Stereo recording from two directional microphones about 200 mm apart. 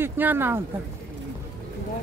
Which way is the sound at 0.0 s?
10° right (ahead or behind).